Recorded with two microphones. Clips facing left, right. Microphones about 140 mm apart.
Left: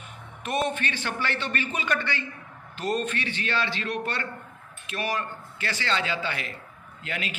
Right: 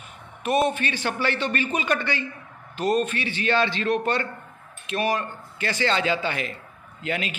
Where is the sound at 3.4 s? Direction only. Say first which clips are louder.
Right 8 dB; 25° right (ahead or behind).